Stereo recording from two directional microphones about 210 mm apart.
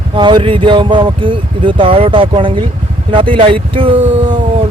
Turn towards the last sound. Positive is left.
turn(degrees=-25)  # may be behind; listen again after turning